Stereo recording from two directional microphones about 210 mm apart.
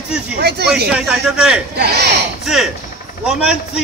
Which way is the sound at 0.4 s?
50° right (ahead or behind).